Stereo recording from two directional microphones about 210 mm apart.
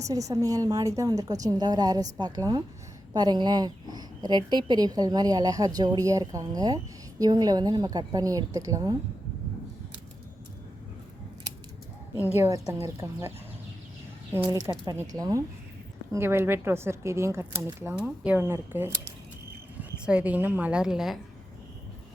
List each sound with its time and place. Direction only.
0.0 s speech: 15° right (ahead or behind)
12.4 s speech: 15° right (ahead or behind)
14.3 s speech: 10° right (ahead or behind)
20.1 s a woman's voice: 5° right (ahead or behind)